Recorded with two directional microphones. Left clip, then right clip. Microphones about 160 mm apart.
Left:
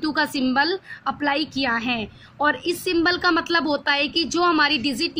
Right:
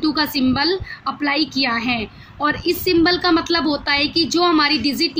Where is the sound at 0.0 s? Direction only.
50° left (ahead or behind).